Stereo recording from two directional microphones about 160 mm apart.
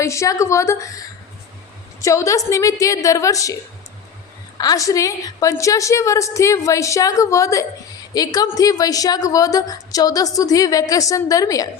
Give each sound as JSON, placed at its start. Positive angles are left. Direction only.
{"t": 0.0, "sound": "a woman's voice", "side_deg": 20}